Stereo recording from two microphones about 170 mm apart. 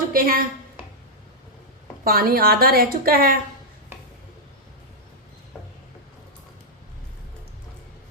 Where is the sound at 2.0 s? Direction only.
60° right (ahead or behind).